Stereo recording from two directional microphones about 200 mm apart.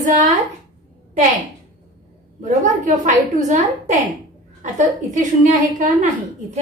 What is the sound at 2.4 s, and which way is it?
A woman's voice, 40° right (ahead or behind).